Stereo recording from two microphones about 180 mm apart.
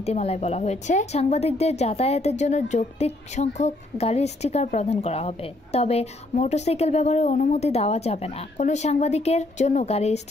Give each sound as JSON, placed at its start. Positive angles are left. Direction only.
{"t": 0.0, "sound": "a woman's voice", "side_deg": 35}